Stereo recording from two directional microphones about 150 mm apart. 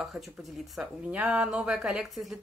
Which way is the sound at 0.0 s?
Centre (ahead or behind).